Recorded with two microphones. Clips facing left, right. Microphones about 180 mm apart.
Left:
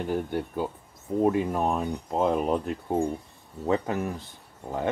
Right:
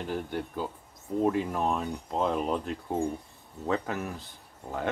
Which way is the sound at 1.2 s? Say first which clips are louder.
Left 3 dB; 10° left (ahead or behind).